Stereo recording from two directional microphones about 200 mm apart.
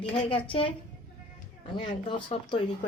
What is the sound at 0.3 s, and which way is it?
Speech, 25° left (ahead or behind).